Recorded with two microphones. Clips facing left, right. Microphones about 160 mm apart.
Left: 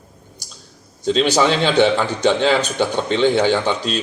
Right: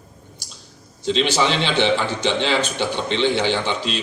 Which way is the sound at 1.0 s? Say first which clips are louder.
Left 4 dB; 45° left (ahead or behind).